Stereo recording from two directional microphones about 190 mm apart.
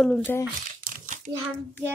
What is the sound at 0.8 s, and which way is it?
Crumpling, 45° right (ahead or behind).